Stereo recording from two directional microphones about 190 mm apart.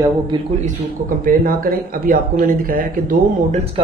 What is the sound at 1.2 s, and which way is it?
Speech, 50° right (ahead or behind).